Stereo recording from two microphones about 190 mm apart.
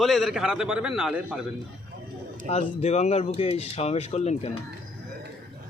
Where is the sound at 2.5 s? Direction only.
35° left (ahead or behind).